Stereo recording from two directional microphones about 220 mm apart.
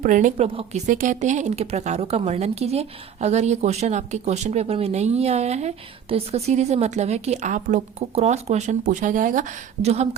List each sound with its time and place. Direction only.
0.0 s speech: 35° right (ahead or behind)